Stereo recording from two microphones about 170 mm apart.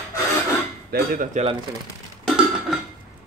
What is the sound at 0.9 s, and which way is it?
Cutlery, 60° right (ahead or behind).